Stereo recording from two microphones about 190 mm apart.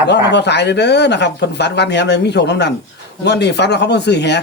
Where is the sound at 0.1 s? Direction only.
65° left (ahead or behind).